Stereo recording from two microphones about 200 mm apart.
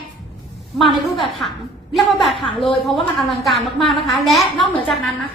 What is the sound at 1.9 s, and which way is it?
A woman's voice, centre (ahead or behind).